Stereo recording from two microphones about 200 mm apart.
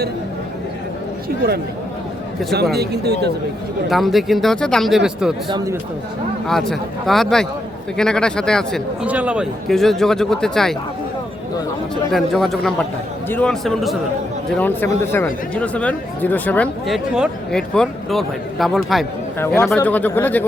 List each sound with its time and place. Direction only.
2.7 s speech: 55° right (ahead or behind)
3.8 s speech: centre (ahead or behind)
5.5 s speech: 20° right (ahead or behind)
6.5 s speech: centre (ahead or behind)
12.1 s speech: centre (ahead or behind)
19.4 s speech: 10° left (ahead or behind)